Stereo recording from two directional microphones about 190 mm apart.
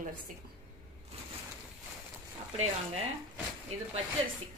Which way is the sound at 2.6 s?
35° right (ahead or behind).